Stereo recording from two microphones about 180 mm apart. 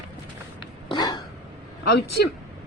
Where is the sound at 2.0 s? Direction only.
60° left (ahead or behind).